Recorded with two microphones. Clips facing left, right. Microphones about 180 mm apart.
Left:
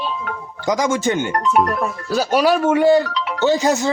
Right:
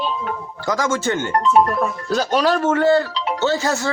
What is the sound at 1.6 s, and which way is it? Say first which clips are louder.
Speech: right 1 dB; 5° left (ahead or behind).